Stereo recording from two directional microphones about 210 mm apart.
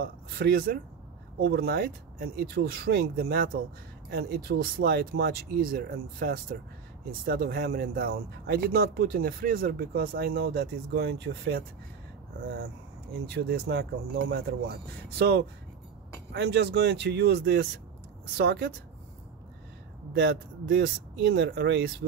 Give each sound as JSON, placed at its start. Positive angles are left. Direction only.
{"t": 0.0, "sound": "speech", "side_deg": -50}
{"t": 13.3, "sound": "speech", "side_deg": -50}
{"t": 20.1, "sound": "speech", "side_deg": -55}